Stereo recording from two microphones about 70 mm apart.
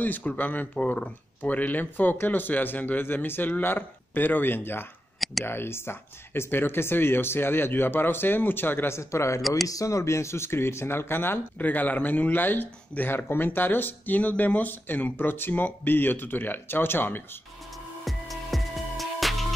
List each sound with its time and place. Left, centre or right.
0.0 s speech: left
18.0 s music: centre